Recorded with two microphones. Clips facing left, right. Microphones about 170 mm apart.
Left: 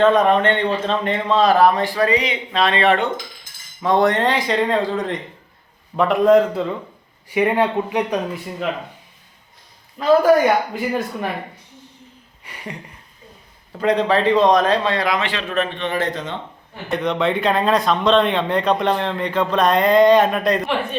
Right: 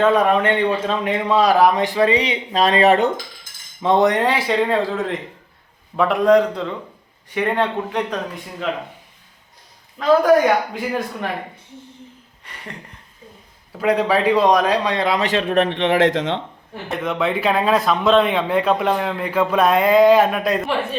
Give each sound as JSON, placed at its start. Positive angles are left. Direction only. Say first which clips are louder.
{"t": 0.0, "sound": "a man's voice", "louder": "left 1 dB", "side_deg": -10}
{"t": 2.1, "sound": "speech", "louder": "right 1 dB", "side_deg": -35}
{"t": 3.8, "sound": "a man's voice", "louder": "right 1 dB", "side_deg": -20}
{"t": 10.0, "sound": "a man's voice", "louder": "even", "side_deg": 0}
{"t": 12.5, "sound": "a sound", "louder": "left 1 dB", "side_deg": 10}
{"t": 13.7, "sound": "a man's voice", "louder": "even", "side_deg": -5}
{"t": 15.0, "sound": "speech", "louder": "right 2 dB", "side_deg": -30}
{"t": 15.3, "sound": "a man's voice", "louder": "right 7 dB", "side_deg": -45}
{"t": 15.5, "sound": "a man's voice", "louder": "right 5 dB", "side_deg": -65}
{"t": 16.9, "sound": "a man's voice", "louder": "left 2 dB", "side_deg": 0}